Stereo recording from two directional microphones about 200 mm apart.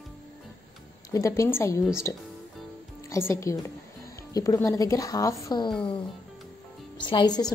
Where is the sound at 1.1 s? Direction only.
15° left (ahead or behind).